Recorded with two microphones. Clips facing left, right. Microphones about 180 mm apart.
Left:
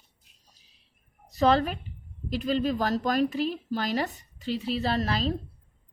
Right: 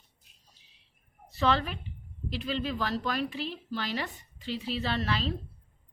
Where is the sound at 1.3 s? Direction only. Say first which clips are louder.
Left 5 dB; 40° left (ahead or behind).